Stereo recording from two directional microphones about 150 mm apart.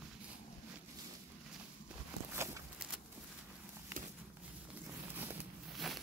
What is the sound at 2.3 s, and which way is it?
Walk, 20° right (ahead or behind).